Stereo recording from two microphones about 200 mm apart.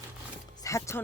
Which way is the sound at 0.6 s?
15° left (ahead or behind).